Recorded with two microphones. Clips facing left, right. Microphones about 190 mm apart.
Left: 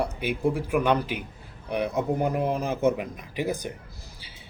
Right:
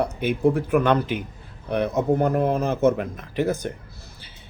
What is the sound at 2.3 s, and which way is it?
Speech, 55° right (ahead or behind).